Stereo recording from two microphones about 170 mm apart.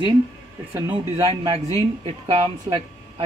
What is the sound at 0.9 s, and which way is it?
Speech, 30° right (ahead or behind).